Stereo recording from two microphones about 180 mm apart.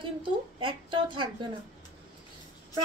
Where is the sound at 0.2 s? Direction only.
30° right (ahead or behind).